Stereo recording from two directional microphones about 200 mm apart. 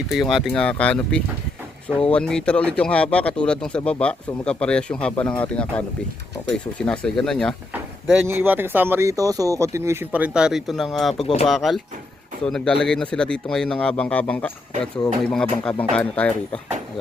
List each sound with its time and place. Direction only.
0.1 s speech: centre (ahead or behind)
8.3 s speech: 10° right (ahead or behind)
11.1 s speech: 30° left (ahead or behind)
11.4 s speech: centre (ahead or behind)